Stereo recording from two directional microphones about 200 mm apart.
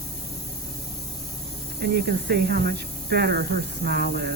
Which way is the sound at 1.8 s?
50° right (ahead or behind).